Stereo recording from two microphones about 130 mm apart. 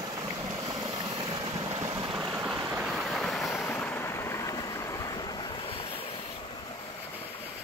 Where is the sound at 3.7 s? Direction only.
15° left (ahead or behind); by 6.0 s 45° left (ahead or behind).